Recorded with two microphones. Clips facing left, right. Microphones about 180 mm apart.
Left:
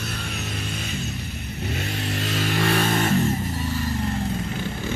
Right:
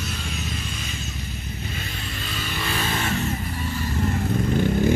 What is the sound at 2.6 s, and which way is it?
Music, 60° left (ahead or behind).